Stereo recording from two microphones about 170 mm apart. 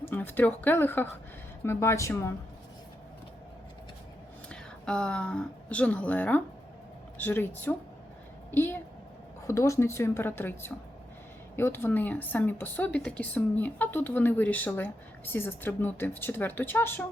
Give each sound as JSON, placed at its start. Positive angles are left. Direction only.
{"t": 0.0, "sound": "speech", "side_deg": 10}
{"t": 4.4, "sound": "speech", "side_deg": 5}